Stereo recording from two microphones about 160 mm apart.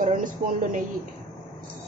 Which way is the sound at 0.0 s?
50° right (ahead or behind).